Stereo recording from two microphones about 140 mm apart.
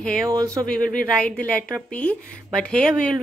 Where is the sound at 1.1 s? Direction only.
10° left (ahead or behind).